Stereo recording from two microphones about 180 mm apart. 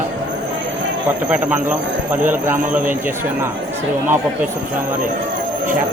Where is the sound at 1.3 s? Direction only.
10° right (ahead or behind).